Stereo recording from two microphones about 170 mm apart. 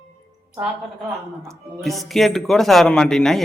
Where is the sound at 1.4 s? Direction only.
Centre (ahead or behind).